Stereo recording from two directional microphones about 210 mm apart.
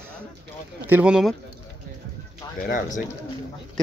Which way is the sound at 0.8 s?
5° right (ahead or behind).